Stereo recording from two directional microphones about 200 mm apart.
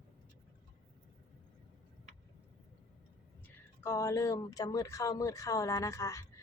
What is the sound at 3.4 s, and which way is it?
Speech, 15° left (ahead or behind).